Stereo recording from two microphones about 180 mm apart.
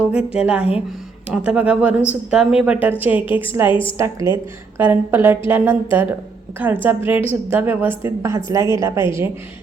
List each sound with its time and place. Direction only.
0.0 s speech: 5° right (ahead or behind)
3.7 s a woman's voice: 30° left (ahead or behind)
3.9 s speech: 15° right (ahead or behind)